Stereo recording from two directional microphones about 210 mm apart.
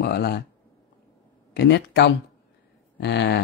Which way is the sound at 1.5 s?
55° left (ahead or behind).